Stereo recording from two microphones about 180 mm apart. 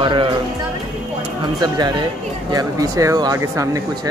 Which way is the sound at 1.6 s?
20° right (ahead or behind).